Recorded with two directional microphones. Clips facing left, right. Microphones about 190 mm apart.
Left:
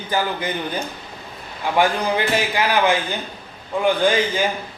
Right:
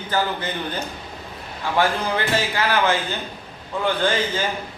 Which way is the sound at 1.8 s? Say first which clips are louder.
Left 2 dB; 15° left (ahead or behind).